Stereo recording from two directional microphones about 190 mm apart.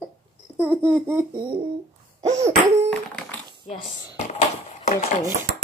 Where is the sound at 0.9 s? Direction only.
10° right (ahead or behind).